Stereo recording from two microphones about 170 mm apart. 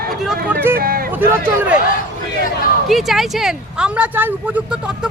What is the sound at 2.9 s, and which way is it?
Speech, centre (ahead or behind).